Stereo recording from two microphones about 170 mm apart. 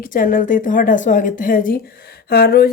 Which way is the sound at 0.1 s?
55° left (ahead or behind).